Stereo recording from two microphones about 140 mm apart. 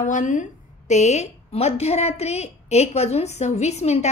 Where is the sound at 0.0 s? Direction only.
65° left (ahead or behind).